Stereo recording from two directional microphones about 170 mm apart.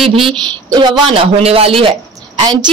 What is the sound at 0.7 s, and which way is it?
Speech, 25° right (ahead or behind).